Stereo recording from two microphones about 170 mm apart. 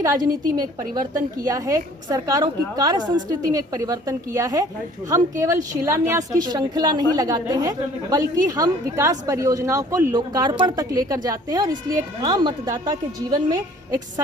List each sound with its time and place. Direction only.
0.0 s a woman's voice: 20° right (ahead or behind)